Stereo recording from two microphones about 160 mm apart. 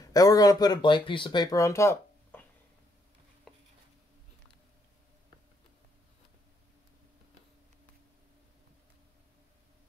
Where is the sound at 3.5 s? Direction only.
5° left (ahead or behind).